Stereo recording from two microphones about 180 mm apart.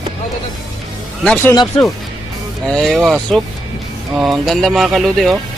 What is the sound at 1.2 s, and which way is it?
Speech, 5° left (ahead or behind).